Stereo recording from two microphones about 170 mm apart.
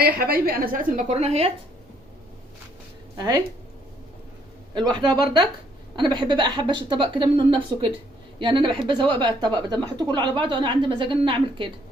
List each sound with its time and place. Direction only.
0.0 s a woman's voice: 60° right (ahead or behind); by 1.5 s 40° right (ahead or behind)
3.2 s a woman's voice: 20° right (ahead or behind)
4.9 s a woman's voice: 25° right (ahead or behind)